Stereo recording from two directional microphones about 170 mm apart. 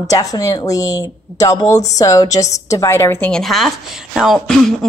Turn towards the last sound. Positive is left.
turn(degrees=0)  # may be behind; listen again after turning